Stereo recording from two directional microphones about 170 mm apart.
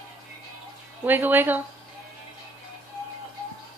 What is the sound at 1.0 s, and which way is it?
Speech, 10° right (ahead or behind).